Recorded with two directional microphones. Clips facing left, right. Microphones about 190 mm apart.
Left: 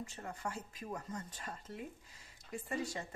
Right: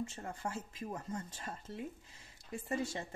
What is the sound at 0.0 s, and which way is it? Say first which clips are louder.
Speech: right 3 dB; 25° right (ahead or behind).